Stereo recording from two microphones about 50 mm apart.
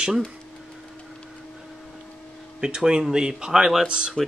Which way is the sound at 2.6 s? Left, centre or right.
Centre.